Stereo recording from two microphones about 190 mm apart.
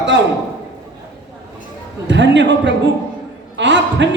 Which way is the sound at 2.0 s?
70° right (ahead or behind).